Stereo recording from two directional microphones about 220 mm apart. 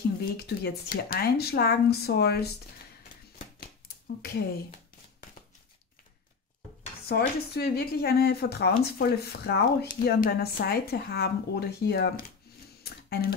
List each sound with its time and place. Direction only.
0.4 s speech: 45° left (ahead or behind)
4.2 s speech: 45° left (ahead or behind)
7.1 s speech: 45° left (ahead or behind)
12.5 s a sound: 45° left (ahead or behind)